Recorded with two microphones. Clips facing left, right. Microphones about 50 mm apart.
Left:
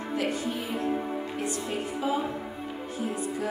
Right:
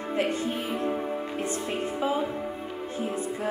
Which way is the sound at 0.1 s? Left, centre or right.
Right.